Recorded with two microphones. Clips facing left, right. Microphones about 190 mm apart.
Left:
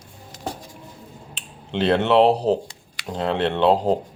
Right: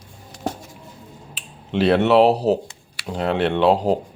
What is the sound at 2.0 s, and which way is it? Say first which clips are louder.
Speech: even; 5° right (ahead or behind).